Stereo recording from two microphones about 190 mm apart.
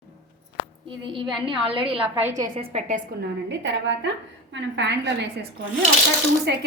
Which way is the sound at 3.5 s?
65° right (ahead or behind).